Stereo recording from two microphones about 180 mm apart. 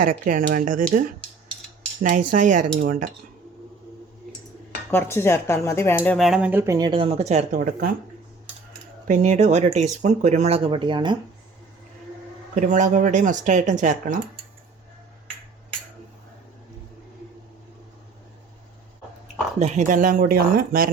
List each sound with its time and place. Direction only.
0.0 s speech: 50° right (ahead or behind)
2.3 s speech: 45° right (ahead or behind)
4.9 s speech: 10° left (ahead or behind); by 7.9 s 45° right (ahead or behind)
9.0 s speech: 40° right (ahead or behind); by 11.2 s 25° right (ahead or behind)
12.5 s speech: 45° right (ahead or behind)
19.5 s speech: 40° right (ahead or behind)